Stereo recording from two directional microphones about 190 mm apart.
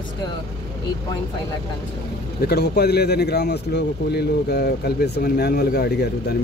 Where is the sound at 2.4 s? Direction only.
55° left (ahead or behind).